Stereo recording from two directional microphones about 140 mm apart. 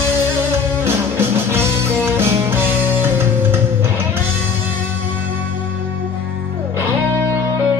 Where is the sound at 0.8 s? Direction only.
15° right (ahead or behind).